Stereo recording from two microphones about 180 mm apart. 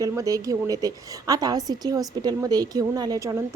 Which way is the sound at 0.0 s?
20° right (ahead or behind).